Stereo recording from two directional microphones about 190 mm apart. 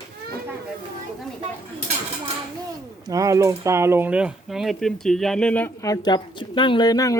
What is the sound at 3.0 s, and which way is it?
Speech, 20° right (ahead or behind).